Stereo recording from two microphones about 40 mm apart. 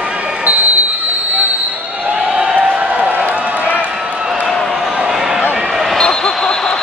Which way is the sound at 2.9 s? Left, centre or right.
Right.